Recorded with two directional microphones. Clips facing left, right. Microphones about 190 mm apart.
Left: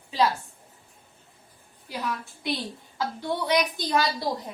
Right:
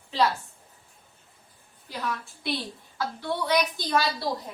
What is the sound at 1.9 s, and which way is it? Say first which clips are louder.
Speech: left 1 dB; 10° left (ahead or behind).